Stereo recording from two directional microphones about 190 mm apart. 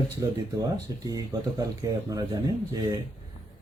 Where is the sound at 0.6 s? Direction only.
20° right (ahead or behind).